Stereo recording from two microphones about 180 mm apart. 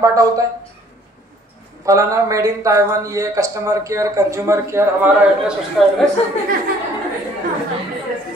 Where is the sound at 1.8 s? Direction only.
15° right (ahead or behind).